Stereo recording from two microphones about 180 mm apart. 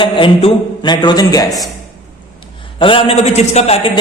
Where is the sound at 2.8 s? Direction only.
30° left (ahead or behind).